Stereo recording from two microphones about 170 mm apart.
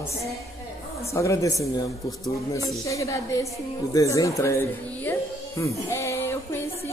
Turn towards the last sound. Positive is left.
turn(degrees=15)  # may be behind; listen again after turning